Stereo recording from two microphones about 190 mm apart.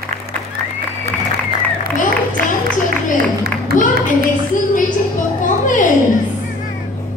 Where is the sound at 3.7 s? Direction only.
50° right (ahead or behind).